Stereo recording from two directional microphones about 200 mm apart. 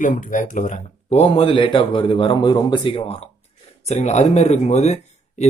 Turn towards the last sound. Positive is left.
turn(degrees=35)  # may be behind; listen again after turning